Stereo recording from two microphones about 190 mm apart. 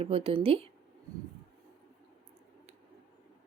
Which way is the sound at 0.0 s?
30° right (ahead or behind).